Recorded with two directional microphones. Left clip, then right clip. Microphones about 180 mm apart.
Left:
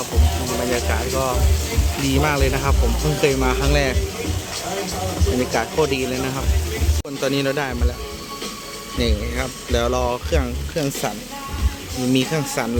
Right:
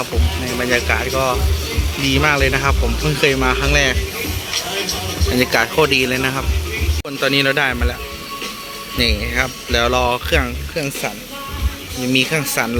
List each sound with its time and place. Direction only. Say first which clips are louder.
0.7 s speech: right 9 dB; 5° right (ahead or behind)
5.4 s speech: right 6 dB; 10° right (ahead or behind)
7.2 s speech: right 6 dB; 5° left (ahead or behind)
9.0 s speech: right 6 dB; 5° left (ahead or behind)
10.8 s speech: right 1 dB; 20° left (ahead or behind)
12.1 s speech: right 5 dB; 15° left (ahead or behind)
12.6 s speech: right 5 dB; 5° left (ahead or behind)